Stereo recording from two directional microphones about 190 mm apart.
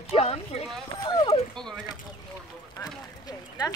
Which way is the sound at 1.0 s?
25° left (ahead or behind).